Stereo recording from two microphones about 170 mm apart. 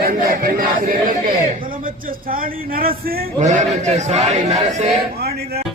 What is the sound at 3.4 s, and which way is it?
A man's voice, 45° right (ahead or behind).